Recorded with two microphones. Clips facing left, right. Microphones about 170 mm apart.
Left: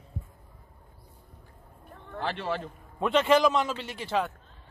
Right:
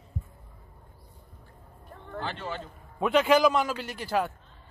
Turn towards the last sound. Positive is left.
turn(degrees=0)  # may be behind; listen again after turning